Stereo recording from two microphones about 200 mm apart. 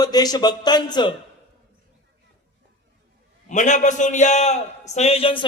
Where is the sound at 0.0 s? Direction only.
20° left (ahead or behind).